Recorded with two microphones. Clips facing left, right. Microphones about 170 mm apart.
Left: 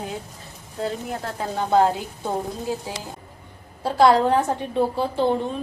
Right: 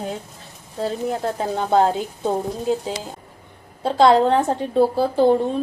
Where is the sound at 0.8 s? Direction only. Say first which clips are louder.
Right 5 dB; 25° right (ahead or behind).